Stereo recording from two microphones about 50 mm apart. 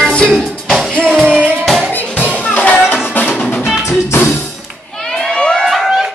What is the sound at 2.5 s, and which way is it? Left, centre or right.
Music, left.